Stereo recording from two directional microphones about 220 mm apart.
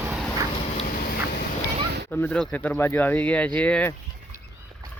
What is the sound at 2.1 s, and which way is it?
Speech, 5° left (ahead or behind).